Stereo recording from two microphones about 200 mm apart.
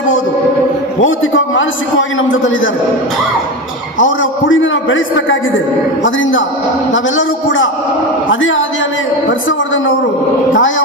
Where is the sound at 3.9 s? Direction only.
75° left (ahead or behind).